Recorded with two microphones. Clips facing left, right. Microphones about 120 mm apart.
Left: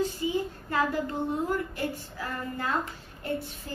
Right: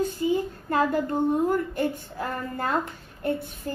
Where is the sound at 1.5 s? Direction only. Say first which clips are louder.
Right 5 dB; 50° right (ahead or behind).